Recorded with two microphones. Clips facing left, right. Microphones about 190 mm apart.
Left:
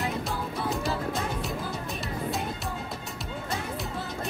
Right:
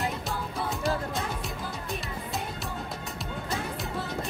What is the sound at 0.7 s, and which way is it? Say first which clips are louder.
Music: even; centre (ahead or behind).